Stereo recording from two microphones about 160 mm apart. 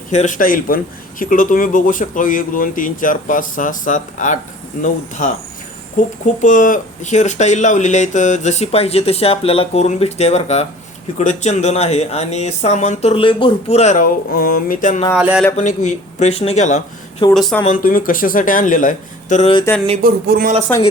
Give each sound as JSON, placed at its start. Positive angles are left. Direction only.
{"t": 0.1, "sound": "speech", "side_deg": 50}
{"t": 15.1, "sound": "speech", "side_deg": -5}
{"t": 15.5, "sound": "speech", "side_deg": 50}
{"t": 17.3, "sound": "speech", "side_deg": 0}
{"t": 17.7, "sound": "speech", "side_deg": 60}
{"t": 20.0, "sound": "speech", "side_deg": -70}